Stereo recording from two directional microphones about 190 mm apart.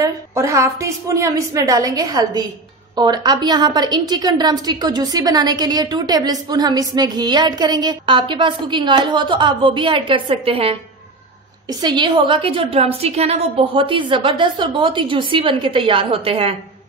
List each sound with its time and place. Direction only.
0.0 s a woman's voice: 15° right (ahead or behind)
11.8 s a woman's voice: 25° right (ahead or behind)